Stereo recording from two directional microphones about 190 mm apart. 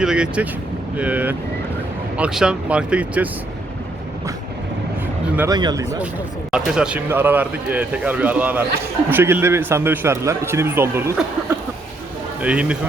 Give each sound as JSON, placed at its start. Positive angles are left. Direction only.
{"t": 0.0, "sound": "speech", "side_deg": -5}
{"t": 5.5, "sound": "speech", "side_deg": -20}
{"t": 6.5, "sound": "speech", "side_deg": -5}
{"t": 12.4, "sound": "speech", "side_deg": -5}